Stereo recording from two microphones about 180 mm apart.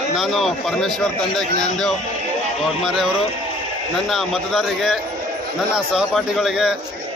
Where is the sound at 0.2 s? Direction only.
Centre (ahead or behind).